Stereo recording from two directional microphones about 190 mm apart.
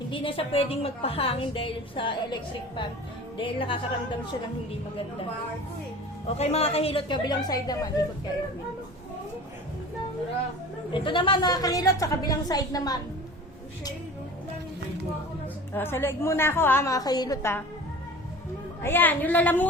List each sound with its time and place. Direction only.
0.1 s a woman's voice: 30° left (ahead or behind)
6.2 s a woman's voice: 35° left (ahead or behind)
10.9 s a woman's voice: 25° left (ahead or behind)
15.7 s a woman's voice: 10° left (ahead or behind)
18.8 s a woman's voice: 10° left (ahead or behind)